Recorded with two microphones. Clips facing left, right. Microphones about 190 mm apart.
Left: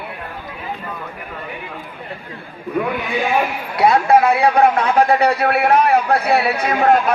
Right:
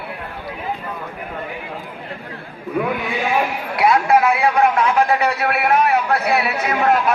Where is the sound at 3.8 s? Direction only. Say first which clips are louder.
Left 2 dB; 25° left (ahead or behind).